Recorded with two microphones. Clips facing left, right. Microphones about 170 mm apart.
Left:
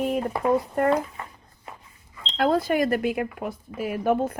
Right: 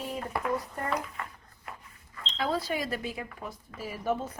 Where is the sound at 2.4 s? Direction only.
50° left (ahead or behind).